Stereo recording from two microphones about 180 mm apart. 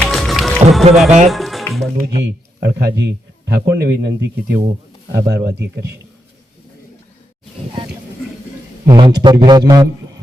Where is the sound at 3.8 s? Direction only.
65° right (ahead or behind).